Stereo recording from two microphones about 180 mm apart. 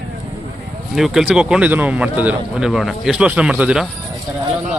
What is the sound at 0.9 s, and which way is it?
A man's voice, centre (ahead or behind).